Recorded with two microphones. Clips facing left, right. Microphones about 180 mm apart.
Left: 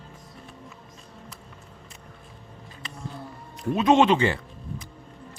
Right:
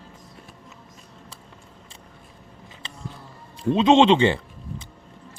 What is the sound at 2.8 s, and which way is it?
Music, 30° right (ahead or behind).